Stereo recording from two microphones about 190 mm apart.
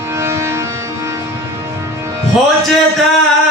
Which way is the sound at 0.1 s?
15° right (ahead or behind).